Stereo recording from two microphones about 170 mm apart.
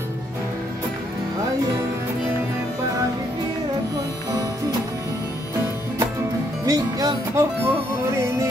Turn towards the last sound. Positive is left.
turn(degrees=-20)  # may be behind; listen again after turning